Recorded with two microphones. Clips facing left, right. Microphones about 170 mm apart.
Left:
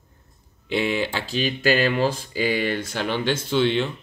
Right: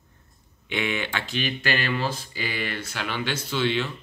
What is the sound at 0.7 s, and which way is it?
Speech, 35° left (ahead or behind).